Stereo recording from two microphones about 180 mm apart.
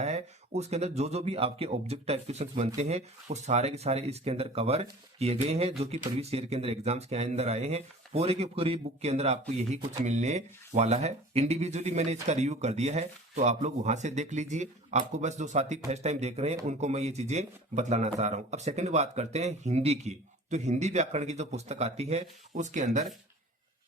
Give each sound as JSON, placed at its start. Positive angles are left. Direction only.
{"t": 0.0, "sound": "speech", "side_deg": -35}